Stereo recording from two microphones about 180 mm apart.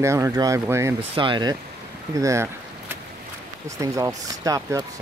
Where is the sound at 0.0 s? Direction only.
15° right (ahead or behind).